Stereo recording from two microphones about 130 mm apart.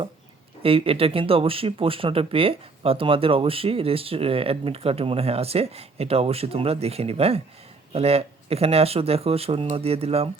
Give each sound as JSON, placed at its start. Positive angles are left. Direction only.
{"t": 0.6, "sound": "speech", "side_deg": -45}